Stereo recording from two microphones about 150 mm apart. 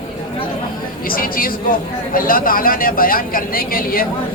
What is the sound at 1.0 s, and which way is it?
Speech, 70° left (ahead or behind).